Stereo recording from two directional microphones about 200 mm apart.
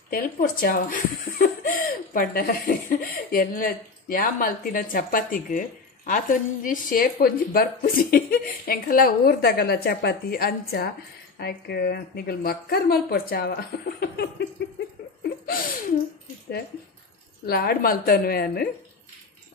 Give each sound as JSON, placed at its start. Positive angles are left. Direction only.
{"t": 0.1, "sound": "speech", "side_deg": 45}
{"t": 15.2, "sound": "laughter", "side_deg": 45}
{"t": 17.5, "sound": "speech", "side_deg": 50}